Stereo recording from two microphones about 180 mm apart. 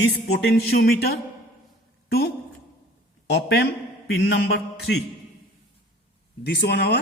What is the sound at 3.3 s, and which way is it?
A man's voice, 65° left (ahead or behind).